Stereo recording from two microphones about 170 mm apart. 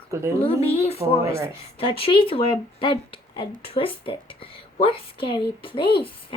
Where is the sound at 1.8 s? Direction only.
30° left (ahead or behind).